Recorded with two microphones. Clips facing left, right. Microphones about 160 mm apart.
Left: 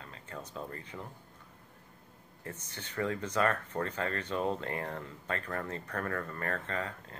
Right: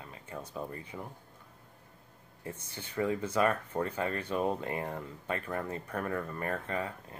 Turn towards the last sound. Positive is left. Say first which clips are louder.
# right 2 dB
turn(degrees=-15)  # may be behind; listen again after turning